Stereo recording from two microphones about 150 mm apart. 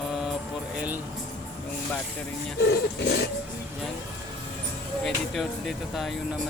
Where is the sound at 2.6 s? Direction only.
90° left.